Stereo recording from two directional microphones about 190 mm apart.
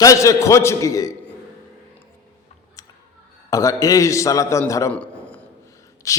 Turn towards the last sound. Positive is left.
turn(degrees=15)  # may be behind; listen again after turning